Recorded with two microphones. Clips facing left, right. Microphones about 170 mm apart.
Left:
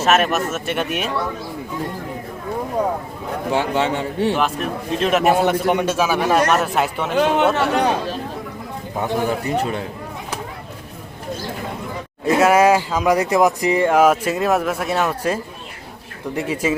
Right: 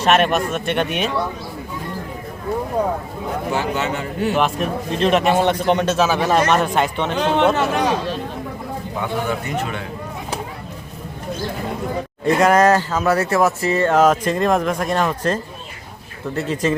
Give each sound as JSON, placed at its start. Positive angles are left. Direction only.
{"t": 0.0, "sound": "a man's voice", "side_deg": 5}
{"t": 3.5, "sound": "a man's voice", "side_deg": 30}
{"t": 4.4, "sound": "a man's voice", "side_deg": 0}
{"t": 9.0, "sound": "a man's voice", "side_deg": 35}
{"t": 12.2, "sound": "speech", "side_deg": 5}